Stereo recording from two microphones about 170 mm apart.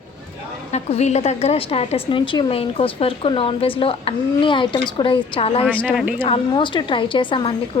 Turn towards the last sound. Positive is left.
turn(degrees=30)  # may be behind; listen again after turning